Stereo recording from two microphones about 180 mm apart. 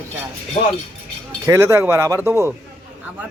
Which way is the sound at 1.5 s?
15° right (ahead or behind).